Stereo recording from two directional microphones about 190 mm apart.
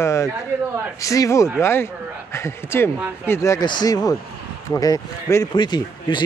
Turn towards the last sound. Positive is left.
turn(degrees=25)  # may be behind; listen again after turning